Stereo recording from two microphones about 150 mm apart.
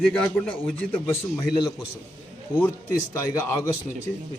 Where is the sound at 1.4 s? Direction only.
25° left (ahead or behind).